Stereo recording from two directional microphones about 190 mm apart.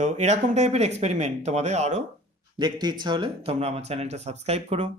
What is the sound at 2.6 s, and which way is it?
Speech, 20° right (ahead or behind).